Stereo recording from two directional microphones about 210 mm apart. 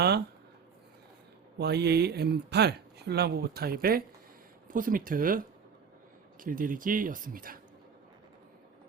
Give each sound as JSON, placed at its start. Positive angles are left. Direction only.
{"t": 1.5, "sound": "speech", "side_deg": -50}
{"t": 6.4, "sound": "speech", "side_deg": -40}